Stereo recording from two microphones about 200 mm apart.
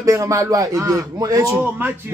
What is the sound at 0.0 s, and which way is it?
A man's voice, 15° right (ahead or behind).